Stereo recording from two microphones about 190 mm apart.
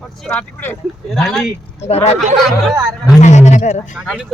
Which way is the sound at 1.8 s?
35° left (ahead or behind).